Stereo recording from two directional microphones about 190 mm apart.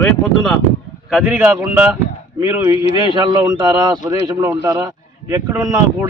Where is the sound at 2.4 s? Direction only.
20° right (ahead or behind).